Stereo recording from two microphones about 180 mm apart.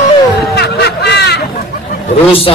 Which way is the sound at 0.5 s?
70° left (ahead or behind).